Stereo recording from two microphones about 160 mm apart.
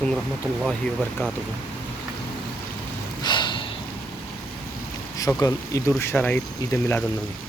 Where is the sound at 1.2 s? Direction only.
15° left (ahead or behind).